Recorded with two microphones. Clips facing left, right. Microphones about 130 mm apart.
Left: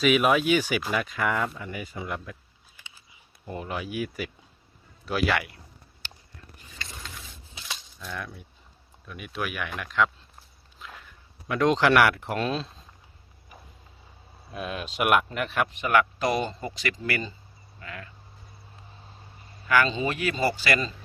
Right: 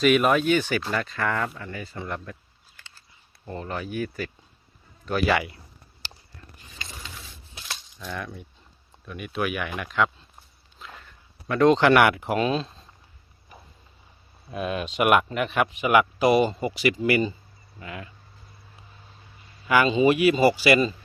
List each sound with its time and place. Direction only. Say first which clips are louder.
0.0 s a man's voice: right 2 dB; centre (ahead or behind)
7.7 s a sound: right 2 dB; centre (ahead or behind)
9.0 s speech: right 5 dB; centre (ahead or behind)
10.8 s walk: right 1 dB; centre (ahead or behind)
11.4 s speech: right 4 dB; 5° left (ahead or behind)
14.5 s speech: right 5 dB; centre (ahead or behind); by 18.1 s 20° right (ahead or behind)
19.6 s speech: right 5 dB; 15° right (ahead or behind)